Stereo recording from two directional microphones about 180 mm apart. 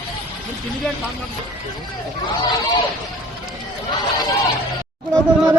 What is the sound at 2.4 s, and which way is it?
Speech, 20° left (ahead or behind).